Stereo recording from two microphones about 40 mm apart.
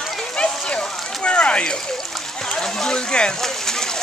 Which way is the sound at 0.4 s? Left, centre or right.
Left.